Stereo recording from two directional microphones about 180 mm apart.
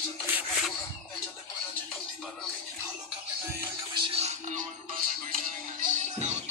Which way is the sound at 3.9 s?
35° right (ahead or behind).